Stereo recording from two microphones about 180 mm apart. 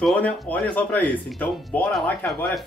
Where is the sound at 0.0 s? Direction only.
10° left (ahead or behind).